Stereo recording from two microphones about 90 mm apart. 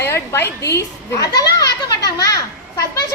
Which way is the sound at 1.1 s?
40° left (ahead or behind).